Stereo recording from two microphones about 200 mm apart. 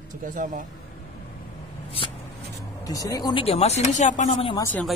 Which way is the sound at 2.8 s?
15° left (ahead or behind).